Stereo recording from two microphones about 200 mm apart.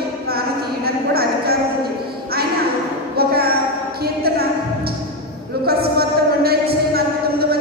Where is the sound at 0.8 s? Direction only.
50° right (ahead or behind).